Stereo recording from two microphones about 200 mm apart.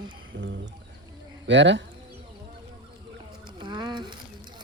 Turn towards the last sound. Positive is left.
turn(degrees=-20)  # may be behind; listen again after turning